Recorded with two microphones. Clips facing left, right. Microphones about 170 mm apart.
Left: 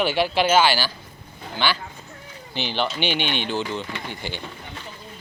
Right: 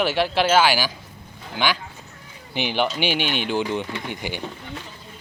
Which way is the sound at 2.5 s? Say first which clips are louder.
Right 3 dB; 15° right (ahead or behind).